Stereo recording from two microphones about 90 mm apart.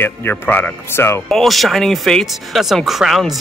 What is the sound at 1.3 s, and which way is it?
Speech, centre (ahead or behind).